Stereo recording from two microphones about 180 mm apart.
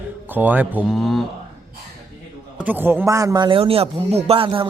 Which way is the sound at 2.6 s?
10° right (ahead or behind).